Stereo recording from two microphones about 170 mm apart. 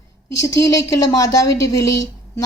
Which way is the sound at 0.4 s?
20° left (ahead or behind).